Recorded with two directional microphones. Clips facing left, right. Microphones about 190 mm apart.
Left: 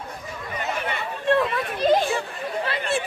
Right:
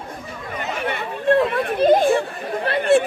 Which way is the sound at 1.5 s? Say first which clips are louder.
Right 5 dB; 55° right (ahead or behind).